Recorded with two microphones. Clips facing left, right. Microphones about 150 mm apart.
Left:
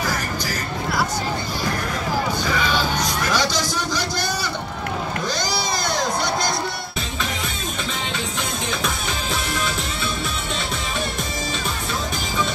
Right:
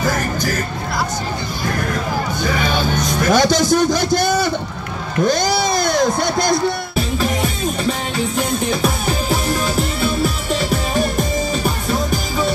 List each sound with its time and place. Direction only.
0.0 s music: 55° right (ahead or behind)
2.5 s music: 55° right (ahead or behind)
3.7 s speech: 50° right (ahead or behind)
5.2 s a sound: 50° right (ahead or behind)
8.4 s music: 35° right (ahead or behind)
11.6 s music: 40° right (ahead or behind)